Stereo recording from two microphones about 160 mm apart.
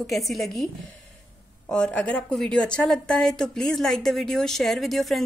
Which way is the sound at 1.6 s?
5° left (ahead or behind).